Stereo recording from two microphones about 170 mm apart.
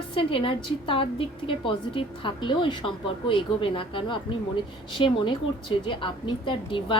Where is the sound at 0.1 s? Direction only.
30° left (ahead or behind).